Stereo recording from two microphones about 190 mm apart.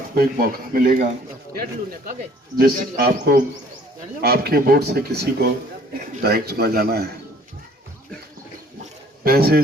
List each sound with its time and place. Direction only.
0.1 s speech: 50° right (ahead or behind)
2.6 s speech: 50° right (ahead or behind)
9.2 s speech: 55° right (ahead or behind)